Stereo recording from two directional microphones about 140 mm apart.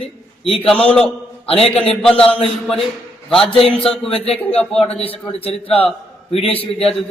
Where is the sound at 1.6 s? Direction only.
5° left (ahead or behind).